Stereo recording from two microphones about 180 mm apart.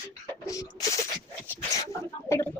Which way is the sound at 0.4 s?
20° left (ahead or behind).